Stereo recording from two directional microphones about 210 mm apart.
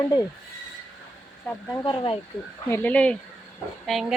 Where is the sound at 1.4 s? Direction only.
10° left (ahead or behind).